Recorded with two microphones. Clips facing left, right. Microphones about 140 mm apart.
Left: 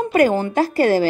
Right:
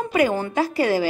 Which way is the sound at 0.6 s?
45° left (ahead or behind).